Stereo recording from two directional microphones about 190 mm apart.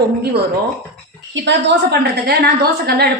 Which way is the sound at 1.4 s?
60° right (ahead or behind).